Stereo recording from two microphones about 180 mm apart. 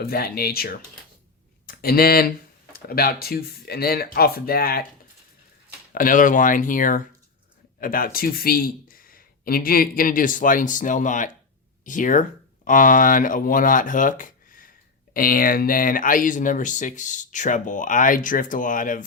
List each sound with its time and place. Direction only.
0.0 s speech: 55° left (ahead or behind)
5.9 s speech: 50° left (ahead or behind)